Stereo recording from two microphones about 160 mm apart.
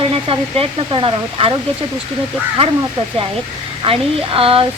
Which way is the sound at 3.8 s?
35° right (ahead or behind).